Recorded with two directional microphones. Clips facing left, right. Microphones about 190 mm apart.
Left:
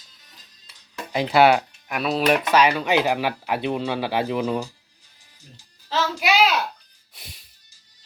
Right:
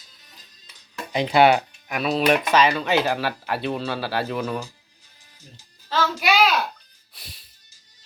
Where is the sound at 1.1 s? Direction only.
5° left (ahead or behind).